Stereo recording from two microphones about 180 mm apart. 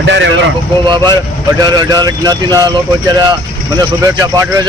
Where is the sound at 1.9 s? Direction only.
20° right (ahead or behind).